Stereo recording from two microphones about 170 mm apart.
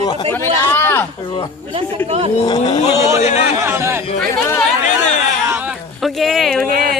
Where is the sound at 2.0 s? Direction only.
35° right (ahead or behind).